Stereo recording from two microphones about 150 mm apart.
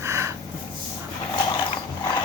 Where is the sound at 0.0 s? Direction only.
20° right (ahead or behind).